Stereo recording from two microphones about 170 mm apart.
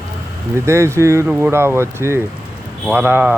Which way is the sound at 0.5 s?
15° right (ahead or behind).